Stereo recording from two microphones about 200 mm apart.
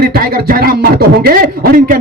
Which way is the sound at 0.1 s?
45° right (ahead or behind).